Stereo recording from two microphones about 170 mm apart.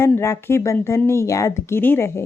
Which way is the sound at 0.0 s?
15° left (ahead or behind).